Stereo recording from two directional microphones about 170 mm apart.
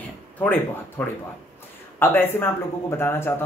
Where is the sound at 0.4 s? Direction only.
10° left (ahead or behind).